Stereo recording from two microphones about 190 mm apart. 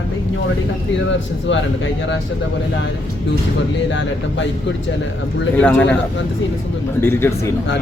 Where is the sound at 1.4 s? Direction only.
75° left (ahead or behind).